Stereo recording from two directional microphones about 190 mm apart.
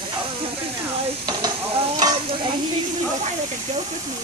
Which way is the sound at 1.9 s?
25° right (ahead or behind).